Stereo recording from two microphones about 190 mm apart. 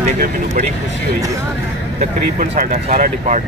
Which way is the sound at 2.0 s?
40° right (ahead or behind).